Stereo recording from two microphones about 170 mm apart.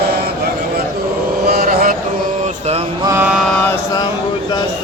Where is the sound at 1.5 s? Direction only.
60° right (ahead or behind).